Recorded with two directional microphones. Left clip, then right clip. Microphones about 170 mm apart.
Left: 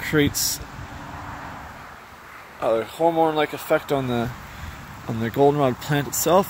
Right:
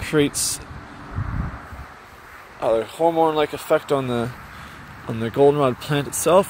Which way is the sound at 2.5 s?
5° left (ahead or behind).